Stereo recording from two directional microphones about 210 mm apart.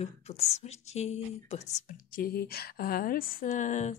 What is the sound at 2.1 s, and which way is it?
Speech, 45° left (ahead or behind).